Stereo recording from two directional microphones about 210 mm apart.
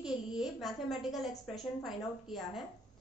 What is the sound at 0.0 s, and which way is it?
A woman's voice, centre (ahead or behind).